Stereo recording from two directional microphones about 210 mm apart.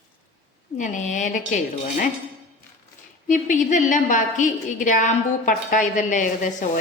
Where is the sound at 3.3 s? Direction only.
40° left (ahead or behind).